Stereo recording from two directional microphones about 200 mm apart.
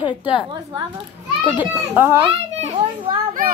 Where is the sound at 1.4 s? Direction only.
10° right (ahead or behind).